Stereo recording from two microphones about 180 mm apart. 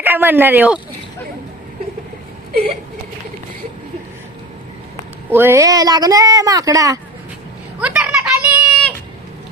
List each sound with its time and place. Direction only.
0.0 s speech: 10° right (ahead or behind)
5.3 s speech: 15° right (ahead or behind)
7.8 s a sound: 5° right (ahead or behind)